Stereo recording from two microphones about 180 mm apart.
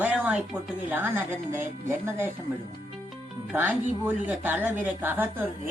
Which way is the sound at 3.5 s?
10° right (ahead or behind).